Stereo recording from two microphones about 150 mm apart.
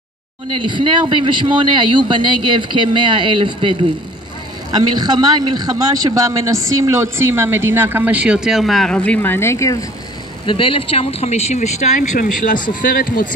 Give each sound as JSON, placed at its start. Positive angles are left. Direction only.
{"t": 0.7, "sound": "speech", "side_deg": -35}
{"t": 4.9, "sound": "speech", "side_deg": -30}
{"t": 10.4, "sound": "speech", "side_deg": 35}
{"t": 12.8, "sound": "speech", "side_deg": 65}